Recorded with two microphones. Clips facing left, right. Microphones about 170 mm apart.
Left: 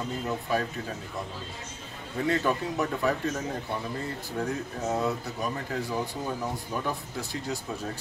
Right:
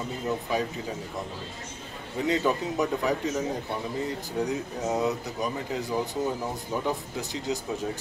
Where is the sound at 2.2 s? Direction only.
20° right (ahead or behind).